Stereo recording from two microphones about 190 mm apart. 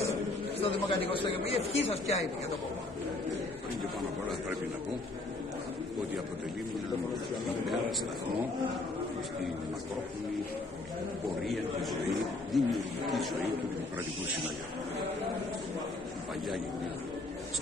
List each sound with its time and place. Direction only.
0.6 s a man's voice: 30° left (ahead or behind)
11.4 s a man's voice: centre (ahead or behind)